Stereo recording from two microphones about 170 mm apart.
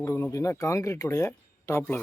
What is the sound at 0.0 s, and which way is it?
Speech, 15° left (ahead or behind).